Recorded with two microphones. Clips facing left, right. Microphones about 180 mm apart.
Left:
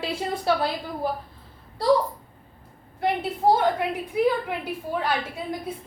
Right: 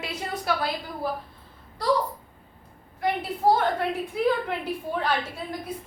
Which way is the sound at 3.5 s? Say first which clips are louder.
Left 2 dB; 10° left (ahead or behind).